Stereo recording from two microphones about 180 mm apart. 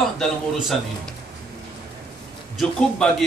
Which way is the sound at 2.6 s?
Centre (ahead or behind).